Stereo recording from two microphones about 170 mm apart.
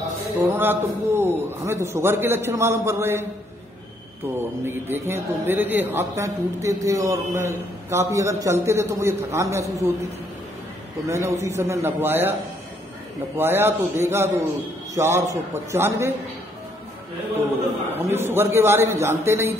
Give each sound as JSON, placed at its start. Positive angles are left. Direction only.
{"t": 0.4, "sound": "a man's voice", "side_deg": -15}
{"t": 4.4, "sound": "a man's voice", "side_deg": -15}
{"t": 11.1, "sound": "a man's voice", "side_deg": -15}
{"t": 13.4, "sound": "a man's voice", "side_deg": -15}
{"t": 17.9, "sound": "a man's voice", "side_deg": -15}